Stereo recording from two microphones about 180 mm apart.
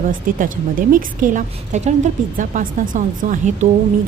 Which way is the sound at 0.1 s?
50° right (ahead or behind).